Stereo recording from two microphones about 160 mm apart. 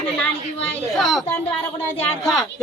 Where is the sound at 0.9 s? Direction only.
Centre (ahead or behind).